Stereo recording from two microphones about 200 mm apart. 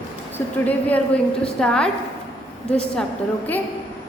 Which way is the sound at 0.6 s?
10° left (ahead or behind).